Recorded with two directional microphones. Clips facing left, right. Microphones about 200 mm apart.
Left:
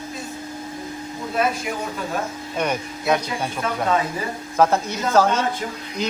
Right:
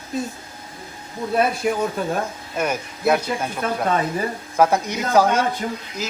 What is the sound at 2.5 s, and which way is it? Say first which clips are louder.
Speech: even; 5° right (ahead or behind).